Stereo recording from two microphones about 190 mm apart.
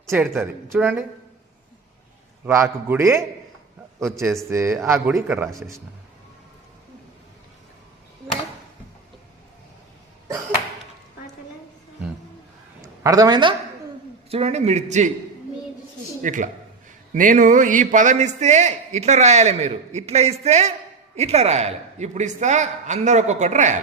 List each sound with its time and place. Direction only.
0.1 s speech: 15° right (ahead or behind)
2.5 s speech: 15° right (ahead or behind)
4.4 s speech: 15° right (ahead or behind)
12.8 s speech: 20° right (ahead or behind)
14.3 s a man's voice: 30° right (ahead or behind)
16.2 s a man's voice: 40° right (ahead or behind)